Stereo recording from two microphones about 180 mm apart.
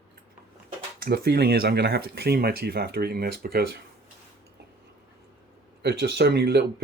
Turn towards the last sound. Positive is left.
turn(degrees=-65)  # may be behind; listen again after turning